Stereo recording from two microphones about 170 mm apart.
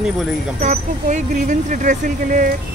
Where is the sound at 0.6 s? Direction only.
45° right (ahead or behind).